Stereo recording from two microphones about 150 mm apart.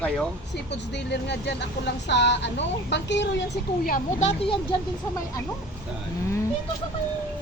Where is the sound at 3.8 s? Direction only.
65° left (ahead or behind).